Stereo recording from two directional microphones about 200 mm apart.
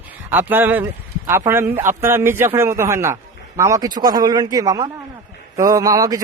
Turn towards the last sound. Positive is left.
turn(degrees=-15)  # may be behind; listen again after turning